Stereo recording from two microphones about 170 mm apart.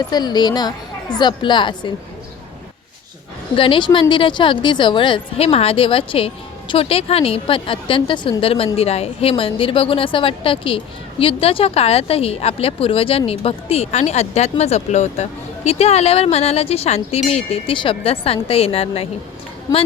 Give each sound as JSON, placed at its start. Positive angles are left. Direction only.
{"t": 0.0, "sound": "a woman's voice", "side_deg": 25}
{"t": 3.5, "sound": "speech", "side_deg": 30}